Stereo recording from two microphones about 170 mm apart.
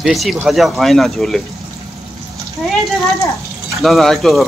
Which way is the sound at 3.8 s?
Centre (ahead or behind).